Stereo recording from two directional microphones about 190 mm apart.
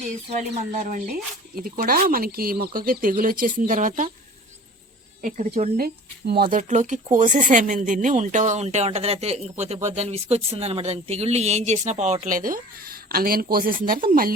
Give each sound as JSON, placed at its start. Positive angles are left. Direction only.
{"t": 0.3, "sound": "speech", "side_deg": -35}
{"t": 5.2, "sound": "speech", "side_deg": -40}